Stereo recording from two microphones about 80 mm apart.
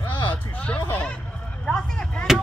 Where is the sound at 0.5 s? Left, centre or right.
Centre.